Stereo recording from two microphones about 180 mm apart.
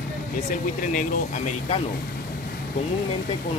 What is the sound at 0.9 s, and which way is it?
Speech, 45° left (ahead or behind).